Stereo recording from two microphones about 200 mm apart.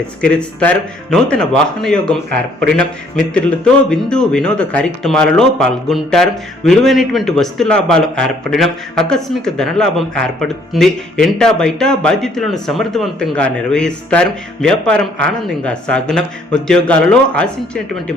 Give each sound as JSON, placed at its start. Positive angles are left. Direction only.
{"t": 0.2, "sound": "speech", "side_deg": 5}